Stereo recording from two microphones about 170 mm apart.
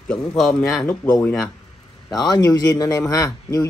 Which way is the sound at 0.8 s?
15° left (ahead or behind).